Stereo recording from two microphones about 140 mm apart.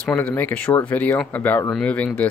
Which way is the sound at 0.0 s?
10° left (ahead or behind).